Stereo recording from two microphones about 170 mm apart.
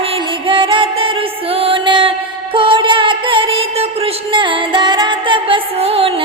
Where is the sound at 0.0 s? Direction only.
30° right (ahead or behind).